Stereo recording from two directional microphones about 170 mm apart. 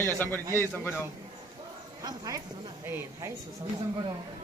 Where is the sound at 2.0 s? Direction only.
20° right (ahead or behind).